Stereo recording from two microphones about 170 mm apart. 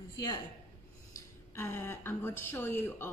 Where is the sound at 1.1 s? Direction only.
15° left (ahead or behind).